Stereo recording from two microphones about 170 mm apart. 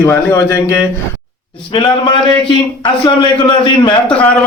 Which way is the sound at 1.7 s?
30° left (ahead or behind).